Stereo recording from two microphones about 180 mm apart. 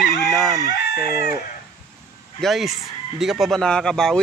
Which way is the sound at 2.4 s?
Centre (ahead or behind).